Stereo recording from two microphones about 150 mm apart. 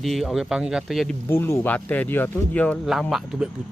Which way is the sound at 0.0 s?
Centre (ahead or behind).